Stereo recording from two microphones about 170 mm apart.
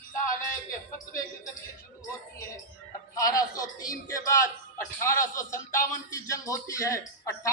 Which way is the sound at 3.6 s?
20° left (ahead or behind).